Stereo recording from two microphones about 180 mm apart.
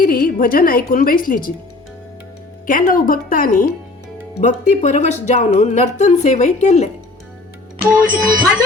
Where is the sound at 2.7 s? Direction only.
50° left (ahead or behind).